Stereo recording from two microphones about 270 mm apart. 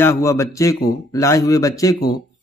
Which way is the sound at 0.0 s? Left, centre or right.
Centre.